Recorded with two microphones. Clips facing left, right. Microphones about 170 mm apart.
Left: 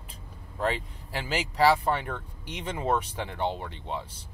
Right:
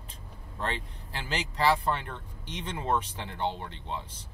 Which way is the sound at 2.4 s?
10° left (ahead or behind).